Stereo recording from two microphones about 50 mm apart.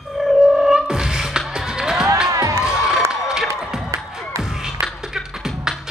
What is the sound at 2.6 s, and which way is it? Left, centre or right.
Cheering, centre.